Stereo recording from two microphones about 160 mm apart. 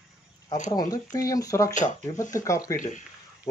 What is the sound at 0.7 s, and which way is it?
Speech, 20° left (ahead or behind).